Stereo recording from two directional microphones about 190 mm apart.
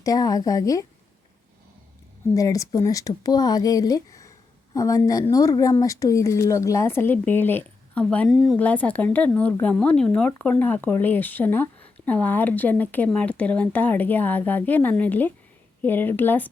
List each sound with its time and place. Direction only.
0.0 s speech: 20° left (ahead or behind)
2.3 s a woman's voice: 15° left (ahead or behind)